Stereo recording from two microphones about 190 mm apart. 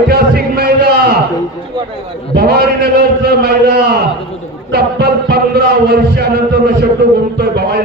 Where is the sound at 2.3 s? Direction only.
55° right (ahead or behind).